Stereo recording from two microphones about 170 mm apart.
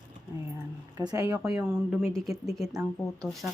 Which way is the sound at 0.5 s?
20° right (ahead or behind).